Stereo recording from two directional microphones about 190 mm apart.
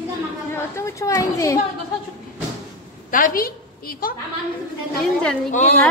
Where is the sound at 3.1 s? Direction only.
45° left (ahead or behind).